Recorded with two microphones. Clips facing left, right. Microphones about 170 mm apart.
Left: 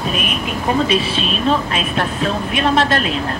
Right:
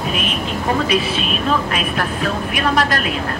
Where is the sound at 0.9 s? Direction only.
30° left (ahead or behind).